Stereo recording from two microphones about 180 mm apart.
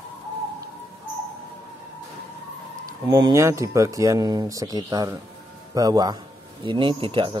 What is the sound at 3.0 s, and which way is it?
Speech, 20° right (ahead or behind).